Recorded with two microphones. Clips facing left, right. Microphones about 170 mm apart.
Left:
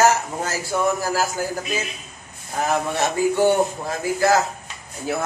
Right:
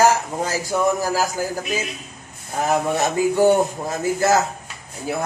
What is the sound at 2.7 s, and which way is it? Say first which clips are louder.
A man's voice: right 2 dB; 20° right (ahead or behind).